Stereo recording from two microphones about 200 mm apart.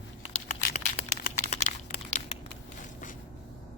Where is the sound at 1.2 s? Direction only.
40° left (ahead or behind).